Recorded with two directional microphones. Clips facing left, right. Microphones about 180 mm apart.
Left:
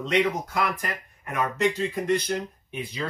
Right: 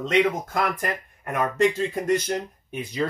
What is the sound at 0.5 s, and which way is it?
Speech, 50° right (ahead or behind).